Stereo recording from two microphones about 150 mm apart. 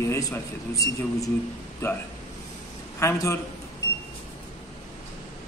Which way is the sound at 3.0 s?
20° left (ahead or behind).